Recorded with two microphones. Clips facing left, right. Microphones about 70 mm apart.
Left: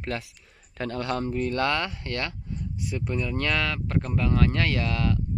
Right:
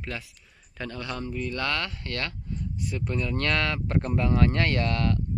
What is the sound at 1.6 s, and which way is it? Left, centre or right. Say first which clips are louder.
Speech: left 3 dB; left.